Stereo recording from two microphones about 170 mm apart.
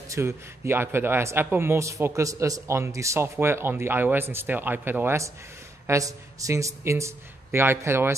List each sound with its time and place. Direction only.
0.1 s a man's voice: 15° right (ahead or behind)